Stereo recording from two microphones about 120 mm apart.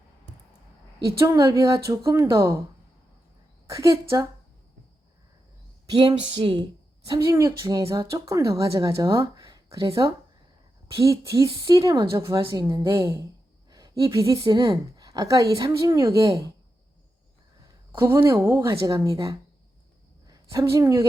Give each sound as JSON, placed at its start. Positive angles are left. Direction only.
{"t": 1.2, "sound": "a woman's voice", "side_deg": -30}
{"t": 3.7, "sound": "a woman's voice", "side_deg": -25}
{"t": 5.9, "sound": "speech", "side_deg": -40}
{"t": 7.1, "sound": "a woman's voice", "side_deg": -25}
{"t": 17.9, "sound": "a woman's voice", "side_deg": -20}